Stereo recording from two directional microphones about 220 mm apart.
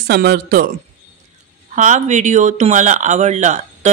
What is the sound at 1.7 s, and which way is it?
Speech, 35° right (ahead or behind).